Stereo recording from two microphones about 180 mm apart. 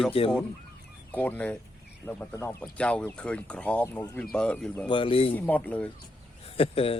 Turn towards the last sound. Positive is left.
turn(degrees=30)  # may be behind; listen again after turning